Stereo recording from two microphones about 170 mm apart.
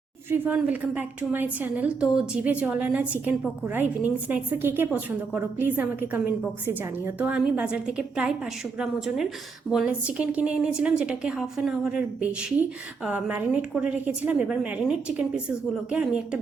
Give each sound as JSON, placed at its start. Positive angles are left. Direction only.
{"t": 0.3, "sound": "a woman's voice", "side_deg": -10}